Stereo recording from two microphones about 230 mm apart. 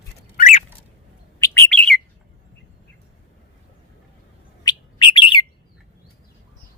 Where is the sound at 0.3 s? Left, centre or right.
Left.